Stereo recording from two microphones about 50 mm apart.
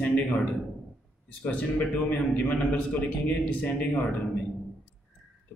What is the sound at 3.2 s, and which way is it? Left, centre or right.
Speech, left.